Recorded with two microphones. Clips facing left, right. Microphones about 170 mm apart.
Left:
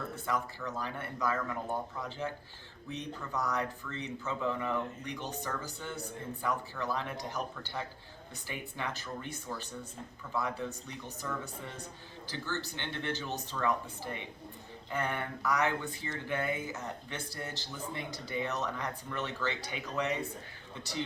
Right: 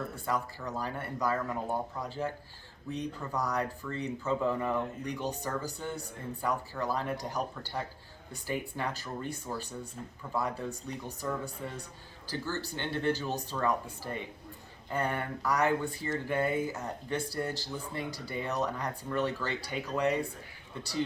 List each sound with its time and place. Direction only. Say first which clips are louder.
0.3 s speech: right 1 dB; 35° right (ahead or behind)
3.3 s speech: right 1 dB; 35° right (ahead or behind)
12.5 s speech: right 3 dB; 40° right (ahead or behind)